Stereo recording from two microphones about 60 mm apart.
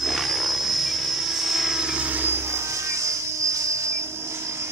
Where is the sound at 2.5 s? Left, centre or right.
Right.